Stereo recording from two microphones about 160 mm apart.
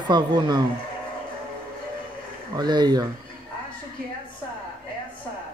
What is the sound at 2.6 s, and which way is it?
Speech, 25° right (ahead or behind).